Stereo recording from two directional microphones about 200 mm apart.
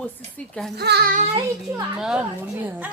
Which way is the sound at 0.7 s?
55° right (ahead or behind).